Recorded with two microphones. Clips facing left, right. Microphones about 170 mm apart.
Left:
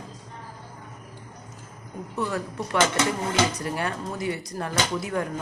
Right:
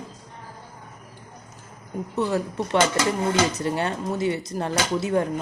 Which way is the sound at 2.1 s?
20° right (ahead or behind).